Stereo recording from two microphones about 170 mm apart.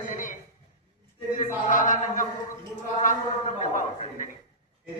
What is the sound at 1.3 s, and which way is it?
Chant, 50° left (ahead or behind).